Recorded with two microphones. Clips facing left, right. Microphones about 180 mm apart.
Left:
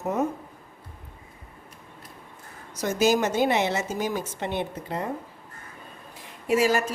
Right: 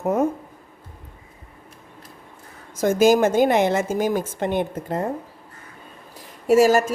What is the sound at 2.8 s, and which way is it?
A woman's voice, 50° right (ahead or behind).